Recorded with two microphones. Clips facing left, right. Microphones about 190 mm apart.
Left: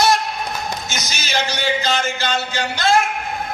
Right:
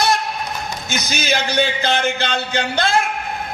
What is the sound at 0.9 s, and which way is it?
A man's voice, 55° right (ahead or behind).